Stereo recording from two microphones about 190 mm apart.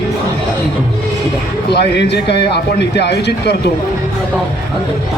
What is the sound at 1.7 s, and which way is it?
Speech, 60° left (ahead or behind).